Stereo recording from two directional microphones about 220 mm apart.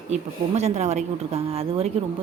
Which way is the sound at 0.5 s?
30° right (ahead or behind).